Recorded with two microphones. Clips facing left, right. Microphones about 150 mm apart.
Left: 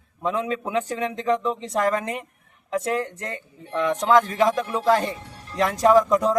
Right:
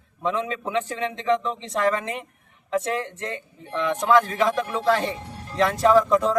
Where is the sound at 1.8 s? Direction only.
45° left (ahead or behind).